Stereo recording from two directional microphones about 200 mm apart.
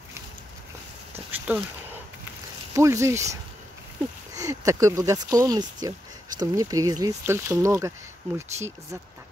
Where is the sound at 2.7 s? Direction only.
15° right (ahead or behind).